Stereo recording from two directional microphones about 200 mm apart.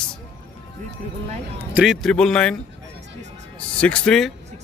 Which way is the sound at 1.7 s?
5° right (ahead or behind).